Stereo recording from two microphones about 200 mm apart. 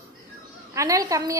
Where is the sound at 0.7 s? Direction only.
15° right (ahead or behind).